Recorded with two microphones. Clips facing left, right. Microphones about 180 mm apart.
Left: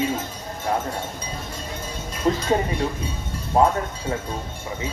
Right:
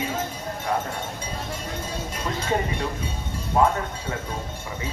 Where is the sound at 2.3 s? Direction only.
30° left (ahead or behind).